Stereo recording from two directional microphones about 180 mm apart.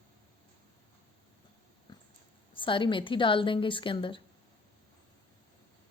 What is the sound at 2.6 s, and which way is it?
A woman's voice, 30° left (ahead or behind).